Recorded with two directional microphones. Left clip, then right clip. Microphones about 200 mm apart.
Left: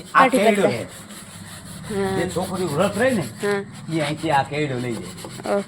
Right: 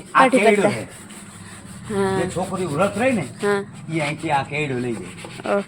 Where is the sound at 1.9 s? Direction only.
20° right (ahead or behind).